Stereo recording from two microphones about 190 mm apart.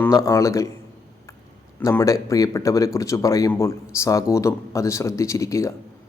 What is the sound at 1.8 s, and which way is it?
Speech, 15° left (ahead or behind).